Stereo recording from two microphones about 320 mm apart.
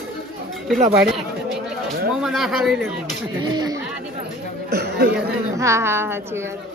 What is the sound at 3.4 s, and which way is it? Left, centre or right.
Speech, centre.